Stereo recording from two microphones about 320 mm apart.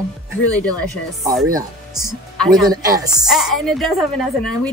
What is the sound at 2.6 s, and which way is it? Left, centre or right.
A woman's voice, centre.